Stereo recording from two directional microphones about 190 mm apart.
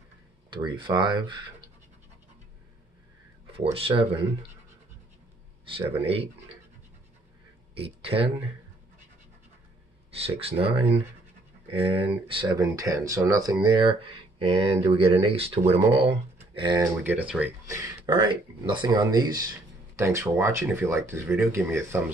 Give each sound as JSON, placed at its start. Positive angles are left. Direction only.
{"t": 0.5, "sound": "speech", "side_deg": -25}
{"t": 3.7, "sound": "speech", "side_deg": -30}
{"t": 7.7, "sound": "speech", "side_deg": -30}
{"t": 10.1, "sound": "speech", "side_deg": -30}
{"t": 16.9, "sound": "speech", "side_deg": -10}